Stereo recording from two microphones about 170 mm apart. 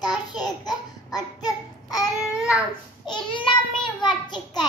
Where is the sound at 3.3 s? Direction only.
30° left (ahead or behind).